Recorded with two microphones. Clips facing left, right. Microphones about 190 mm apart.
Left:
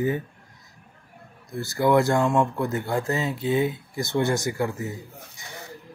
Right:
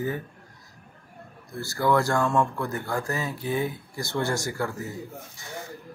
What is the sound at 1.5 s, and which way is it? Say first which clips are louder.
Speech: left 3 dB; 20° left (ahead or behind).